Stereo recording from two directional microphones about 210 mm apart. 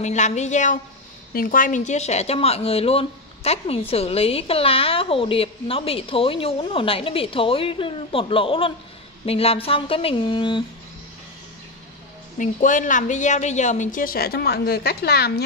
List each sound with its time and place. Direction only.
0.0 s a woman's voice: 35° left (ahead or behind)
12.4 s a woman's voice: 40° left (ahead or behind)